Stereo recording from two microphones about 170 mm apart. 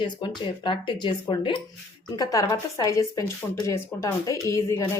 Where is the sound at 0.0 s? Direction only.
30° left (ahead or behind).